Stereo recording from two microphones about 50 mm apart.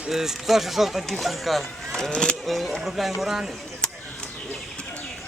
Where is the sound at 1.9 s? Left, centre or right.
Centre.